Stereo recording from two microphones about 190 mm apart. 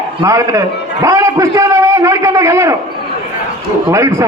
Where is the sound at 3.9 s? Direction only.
15° right (ahead or behind).